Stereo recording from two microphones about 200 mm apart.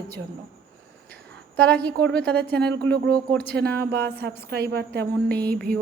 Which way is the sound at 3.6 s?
50° right (ahead or behind).